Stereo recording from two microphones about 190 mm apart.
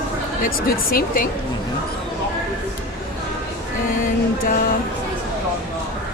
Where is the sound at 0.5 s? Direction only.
50° left (ahead or behind).